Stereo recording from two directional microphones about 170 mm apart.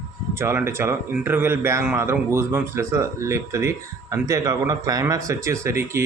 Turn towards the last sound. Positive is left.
turn(degrees=-15)  # may be behind; listen again after turning